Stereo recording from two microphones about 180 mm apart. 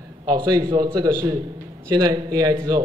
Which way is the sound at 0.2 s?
25° right (ahead or behind).